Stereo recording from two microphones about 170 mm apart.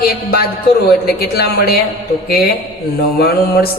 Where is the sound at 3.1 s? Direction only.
65° left (ahead or behind).